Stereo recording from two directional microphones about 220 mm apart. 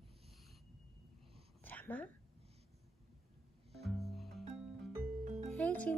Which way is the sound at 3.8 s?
Centre (ahead or behind).